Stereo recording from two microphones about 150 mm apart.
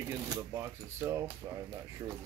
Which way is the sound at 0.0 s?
20° right (ahead or behind).